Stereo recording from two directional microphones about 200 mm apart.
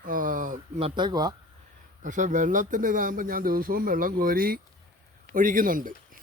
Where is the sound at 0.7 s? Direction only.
25° right (ahead or behind).